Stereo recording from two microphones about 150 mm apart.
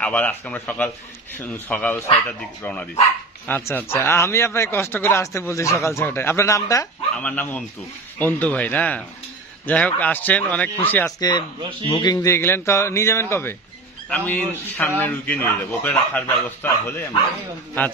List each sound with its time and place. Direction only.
0.0 s speech: 10° left (ahead or behind)
7.2 s speech: 10° left (ahead or behind)
11.1 s speech: 30° left (ahead or behind)